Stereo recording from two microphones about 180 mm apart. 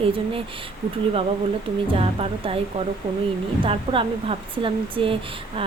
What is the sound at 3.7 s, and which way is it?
Speech, 30° right (ahead or behind).